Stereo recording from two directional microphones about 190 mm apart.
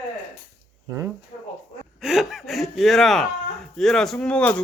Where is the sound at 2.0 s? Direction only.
Centre (ahead or behind).